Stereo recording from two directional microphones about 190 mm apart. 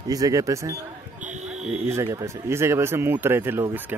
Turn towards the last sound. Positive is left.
turn(degrees=-10)  # may be behind; listen again after turning